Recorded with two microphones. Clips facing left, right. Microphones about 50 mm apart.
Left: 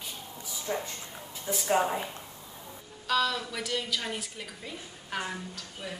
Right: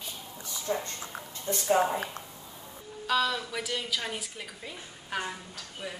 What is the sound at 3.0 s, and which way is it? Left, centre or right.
A woman's voice, centre.